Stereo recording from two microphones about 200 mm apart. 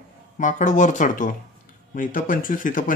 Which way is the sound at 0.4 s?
40° left (ahead or behind).